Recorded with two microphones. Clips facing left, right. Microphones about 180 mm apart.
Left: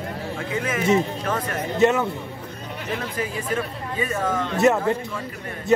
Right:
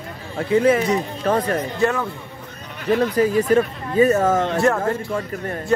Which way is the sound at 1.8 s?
20° left (ahead or behind).